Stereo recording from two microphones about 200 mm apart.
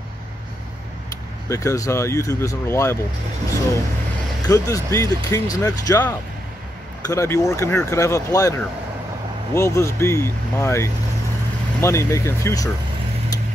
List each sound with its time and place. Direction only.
1.5 s speech: 15° left (ahead or behind)
4.4 s speech: 15° left (ahead or behind)